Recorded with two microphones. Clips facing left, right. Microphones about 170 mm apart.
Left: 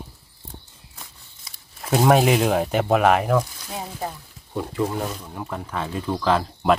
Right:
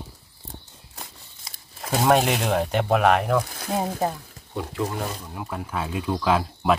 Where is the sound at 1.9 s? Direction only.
5° left (ahead or behind).